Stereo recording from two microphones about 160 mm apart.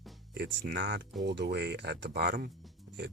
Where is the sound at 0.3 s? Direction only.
90° right.